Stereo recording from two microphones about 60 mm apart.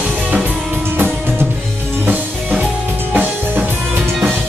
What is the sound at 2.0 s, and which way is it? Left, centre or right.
Music, right.